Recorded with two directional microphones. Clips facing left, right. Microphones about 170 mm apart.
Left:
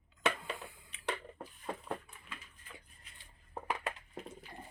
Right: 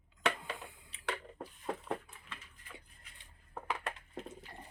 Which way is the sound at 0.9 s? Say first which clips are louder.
Even; 30° right (ahead or behind).